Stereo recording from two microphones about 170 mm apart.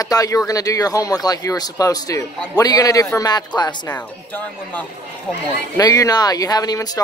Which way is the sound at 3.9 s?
10° left (ahead or behind).